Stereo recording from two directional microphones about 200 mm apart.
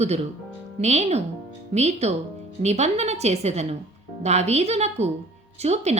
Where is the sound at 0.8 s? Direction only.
35° right (ahead or behind).